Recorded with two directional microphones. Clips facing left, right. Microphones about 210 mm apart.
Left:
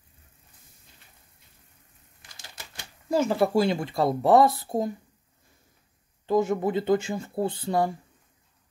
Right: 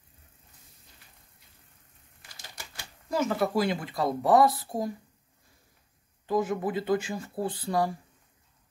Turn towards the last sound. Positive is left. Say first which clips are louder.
# left 2 dB
turn(degrees=25)  # may be behind; listen again after turning